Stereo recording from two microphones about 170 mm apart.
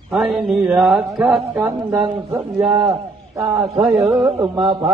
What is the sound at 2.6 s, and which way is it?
A man's voice, 5° right (ahead or behind).